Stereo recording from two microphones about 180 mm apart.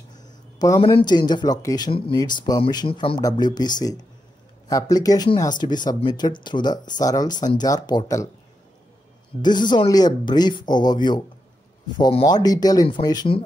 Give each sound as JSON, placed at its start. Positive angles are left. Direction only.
{"t": 0.1, "sound": "speech", "side_deg": 20}
{"t": 9.4, "sound": "speech", "side_deg": 25}